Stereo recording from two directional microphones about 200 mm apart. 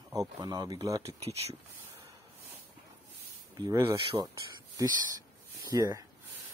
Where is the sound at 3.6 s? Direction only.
20° right (ahead or behind).